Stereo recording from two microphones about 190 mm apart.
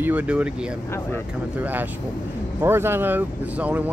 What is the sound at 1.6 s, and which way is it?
Speech, 10° right (ahead or behind).